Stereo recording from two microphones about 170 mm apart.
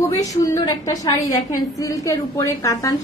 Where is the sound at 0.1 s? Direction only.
20° left (ahead or behind).